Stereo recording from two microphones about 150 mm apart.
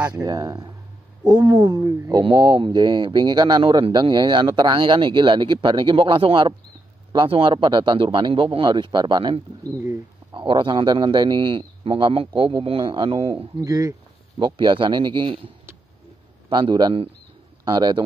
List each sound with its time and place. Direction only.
0.2 s speech: 25° right (ahead or behind)
13.6 s speech: 25° right (ahead or behind)